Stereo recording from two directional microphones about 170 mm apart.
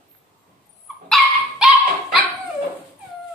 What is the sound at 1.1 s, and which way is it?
Dog, 5° right (ahead or behind).